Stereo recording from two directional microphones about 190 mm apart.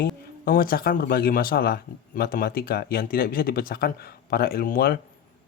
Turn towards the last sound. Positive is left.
turn(degrees=50)  # may be behind; listen again after turning